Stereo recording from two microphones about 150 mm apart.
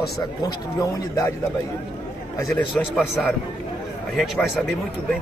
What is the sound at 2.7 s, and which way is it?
A man's voice, centre (ahead or behind).